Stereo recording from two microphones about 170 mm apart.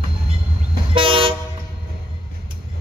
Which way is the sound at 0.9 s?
30° right (ahead or behind).